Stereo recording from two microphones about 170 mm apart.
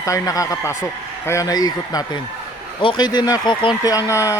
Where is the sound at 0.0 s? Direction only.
20° left (ahead or behind).